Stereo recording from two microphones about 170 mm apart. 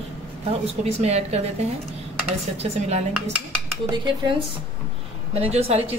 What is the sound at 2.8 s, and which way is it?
Speech, 40° right (ahead or behind).